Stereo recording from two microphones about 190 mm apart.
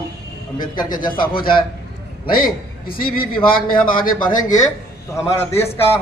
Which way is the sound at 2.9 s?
50° left (ahead or behind).